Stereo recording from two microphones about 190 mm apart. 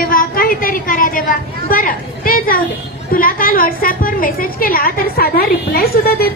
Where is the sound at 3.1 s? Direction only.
50° left (ahead or behind).